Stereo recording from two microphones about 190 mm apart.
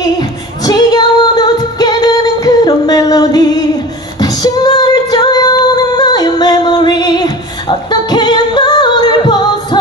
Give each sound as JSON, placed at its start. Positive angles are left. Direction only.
{"t": 0.2, "sound": "music", "side_deg": 20}
{"t": 4.2, "sound": "female singing", "side_deg": 20}